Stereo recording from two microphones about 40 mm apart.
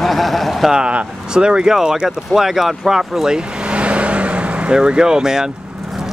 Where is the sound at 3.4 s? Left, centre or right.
Right.